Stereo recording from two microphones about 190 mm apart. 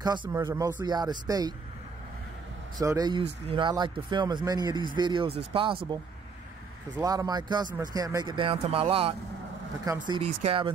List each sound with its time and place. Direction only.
0.0 s speech: 20° right (ahead or behind)
2.8 s speech: 20° right (ahead or behind)
7.0 s speech: 20° right (ahead or behind)